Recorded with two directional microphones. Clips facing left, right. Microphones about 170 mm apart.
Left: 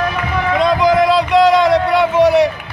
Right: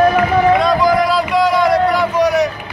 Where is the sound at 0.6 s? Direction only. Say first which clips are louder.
Left 1 dB; 20° left (ahead or behind).